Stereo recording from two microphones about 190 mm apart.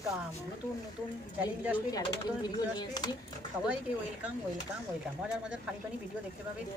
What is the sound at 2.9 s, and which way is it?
Speech, 20° left (ahead or behind).